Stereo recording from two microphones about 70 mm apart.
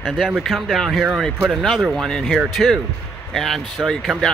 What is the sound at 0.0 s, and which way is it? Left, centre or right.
Speech, centre.